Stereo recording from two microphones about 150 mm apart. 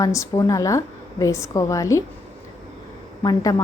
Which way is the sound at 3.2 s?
25° left (ahead or behind).